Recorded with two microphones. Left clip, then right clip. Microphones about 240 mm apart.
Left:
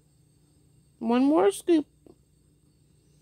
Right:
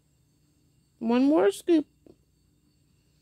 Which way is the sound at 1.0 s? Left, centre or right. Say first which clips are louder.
Even; centre.